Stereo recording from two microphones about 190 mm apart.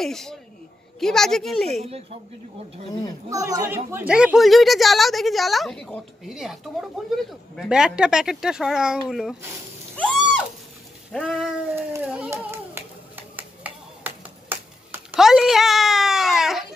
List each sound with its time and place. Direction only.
0.0 s speech: centre (ahead or behind)
1.8 s speech: 30° right (ahead or behind)
2.9 s a child's voice: 20° left (ahead or behind)
3.3 s speech: 15° right (ahead or behind)
9.9 s a sound: 5° left (ahead or behind)
11.1 s speech: centre (ahead or behind)
11.7 s a sound: 10° right (ahead or behind)